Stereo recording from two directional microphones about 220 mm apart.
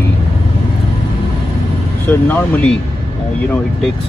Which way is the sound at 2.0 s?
10° left (ahead or behind).